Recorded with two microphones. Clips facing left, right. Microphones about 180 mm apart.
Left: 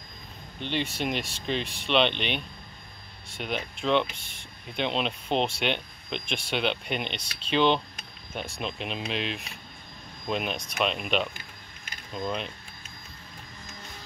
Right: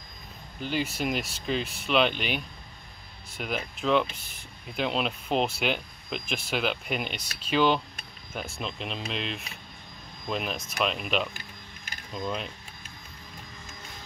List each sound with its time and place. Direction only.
0.6 s speech: 5° right (ahead or behind)
7.2 s speech: 30° left (ahead or behind)
7.4 s speech: 5° right (ahead or behind)